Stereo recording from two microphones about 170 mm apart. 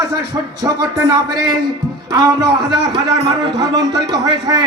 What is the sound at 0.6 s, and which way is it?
A man's voice, 20° right (ahead or behind).